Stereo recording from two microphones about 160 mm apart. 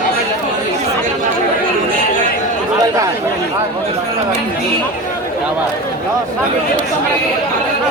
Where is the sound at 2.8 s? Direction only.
20° right (ahead or behind).